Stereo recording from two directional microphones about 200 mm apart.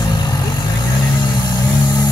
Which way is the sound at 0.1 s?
20° left (ahead or behind).